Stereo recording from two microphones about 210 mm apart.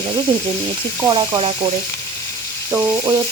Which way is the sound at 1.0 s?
20° right (ahead or behind).